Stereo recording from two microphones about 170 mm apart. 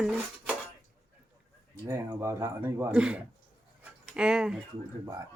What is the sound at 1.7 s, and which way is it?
A man's voice, 20° right (ahead or behind).